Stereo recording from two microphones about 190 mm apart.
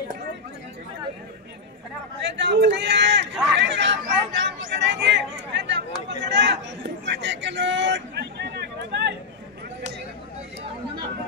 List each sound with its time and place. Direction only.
2.2 s a man's voice: 70° right (ahead or behind)
3.5 s chatter: 70° right (ahead or behind)
7.1 s a sound: 70° right (ahead or behind)